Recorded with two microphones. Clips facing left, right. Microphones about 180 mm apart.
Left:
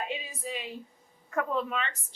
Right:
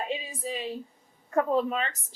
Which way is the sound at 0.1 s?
30° right (ahead or behind).